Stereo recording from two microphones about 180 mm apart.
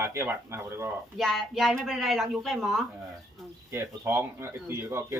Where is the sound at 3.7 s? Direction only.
15° right (ahead or behind).